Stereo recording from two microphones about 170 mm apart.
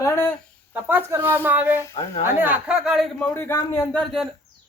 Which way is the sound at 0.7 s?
15° right (ahead or behind).